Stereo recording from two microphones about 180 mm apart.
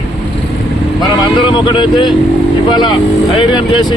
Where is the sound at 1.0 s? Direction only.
25° left (ahead or behind).